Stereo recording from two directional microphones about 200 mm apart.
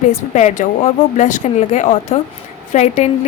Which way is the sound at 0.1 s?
35° left (ahead or behind).